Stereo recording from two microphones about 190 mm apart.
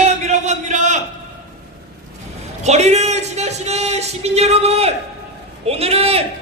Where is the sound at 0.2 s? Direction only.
40° right (ahead or behind).